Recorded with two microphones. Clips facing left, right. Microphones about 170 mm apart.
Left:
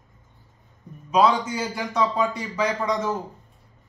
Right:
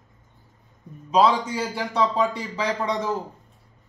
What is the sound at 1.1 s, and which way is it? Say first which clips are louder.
A man's voice: even; 35° right (ahead or behind).